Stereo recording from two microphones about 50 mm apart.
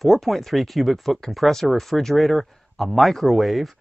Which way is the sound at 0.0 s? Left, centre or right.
Centre.